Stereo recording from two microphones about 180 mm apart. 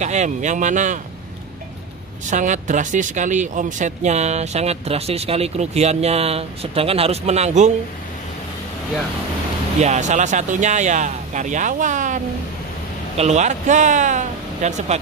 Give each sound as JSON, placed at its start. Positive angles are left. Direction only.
{"t": 0.0, "sound": "speech", "side_deg": -40}
{"t": 2.2, "sound": "speech", "side_deg": -45}
{"t": 9.8, "sound": "speech", "side_deg": -40}
{"t": 13.2, "sound": "speech", "side_deg": -40}